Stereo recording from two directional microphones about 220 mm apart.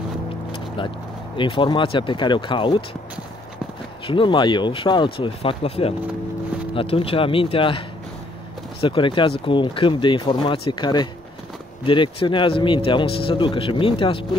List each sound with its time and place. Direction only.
1.3 s a man's voice: 20° left (ahead or behind)
4.1 s a man's voice: 20° left (ahead or behind)
8.8 s a man's voice: 20° left (ahead or behind)